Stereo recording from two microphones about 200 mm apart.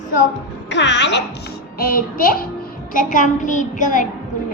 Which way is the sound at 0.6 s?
60° left (ahead or behind).